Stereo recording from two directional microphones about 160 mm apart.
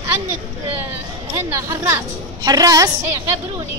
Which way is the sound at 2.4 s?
25° right (ahead or behind).